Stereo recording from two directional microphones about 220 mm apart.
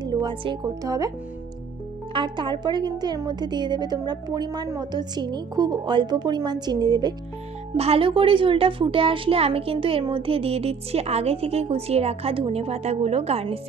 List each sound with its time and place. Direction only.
0.0 s speech: 20° right (ahead or behind)
2.1 s a woman's voice: 20° right (ahead or behind)